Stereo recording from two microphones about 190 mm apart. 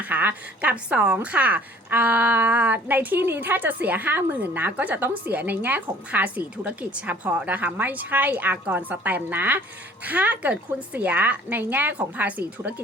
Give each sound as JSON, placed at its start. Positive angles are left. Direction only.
{"t": 0.0, "sound": "speech", "side_deg": -10}